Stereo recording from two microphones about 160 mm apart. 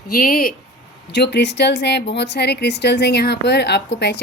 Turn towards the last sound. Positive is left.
turn(degrees=90)